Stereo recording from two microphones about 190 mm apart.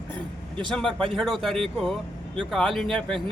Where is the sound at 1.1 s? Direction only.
Centre (ahead or behind).